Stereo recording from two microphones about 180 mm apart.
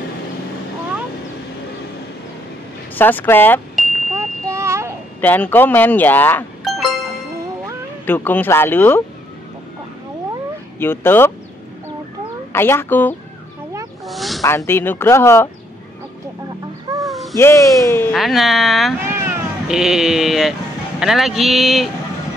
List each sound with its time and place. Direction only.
3.0 s speech: 10° left (ahead or behind)
4.1 s a sound: 15° right (ahead or behind)
5.2 s speech: 10° left (ahead or behind)
6.6 s music: centre (ahead or behind)
8.1 s speech: 10° left (ahead or behind)
10.8 s speech: 10° left (ahead or behind)
12.5 s speech: 15° left (ahead or behind)
14.0 s a sound: centre (ahead or behind)
14.4 s speech: 15° left (ahead or behind)
17.0 s owl: centre (ahead or behind)
17.4 s speech: 15° left (ahead or behind)
18.1 s speech: centre (ahead or behind)
19.0 s vehicle: 15° right (ahead or behind)
19.7 s speech: 5° right (ahead or behind)